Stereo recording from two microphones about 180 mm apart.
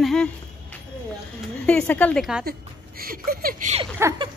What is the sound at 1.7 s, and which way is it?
Speech, 5° left (ahead or behind).